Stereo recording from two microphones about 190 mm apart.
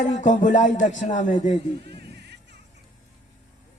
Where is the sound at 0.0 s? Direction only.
40° left (ahead or behind).